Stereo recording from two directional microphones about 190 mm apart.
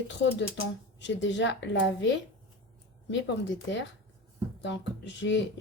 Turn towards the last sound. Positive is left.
turn(degrees=70)  # may be behind; listen again after turning